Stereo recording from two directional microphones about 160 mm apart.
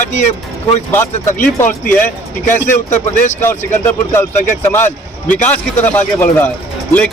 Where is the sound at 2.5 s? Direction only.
50° left (ahead or behind).